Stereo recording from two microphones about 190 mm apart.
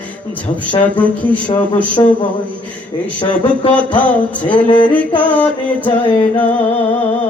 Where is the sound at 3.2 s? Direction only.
25° left (ahead or behind).